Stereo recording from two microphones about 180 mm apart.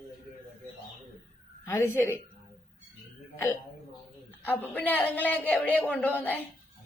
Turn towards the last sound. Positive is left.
turn(degrees=10)  # may be behind; listen again after turning